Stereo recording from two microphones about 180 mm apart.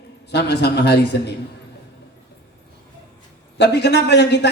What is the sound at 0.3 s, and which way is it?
A man's voice, 65° left (ahead or behind).